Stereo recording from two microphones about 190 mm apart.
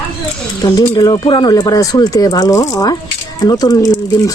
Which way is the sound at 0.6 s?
20° left (ahead or behind).